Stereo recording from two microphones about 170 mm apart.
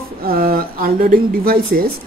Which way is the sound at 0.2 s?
60° right (ahead or behind).